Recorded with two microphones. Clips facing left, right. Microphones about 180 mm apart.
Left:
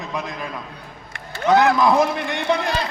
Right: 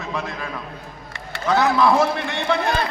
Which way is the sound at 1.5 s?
15° left (ahead or behind).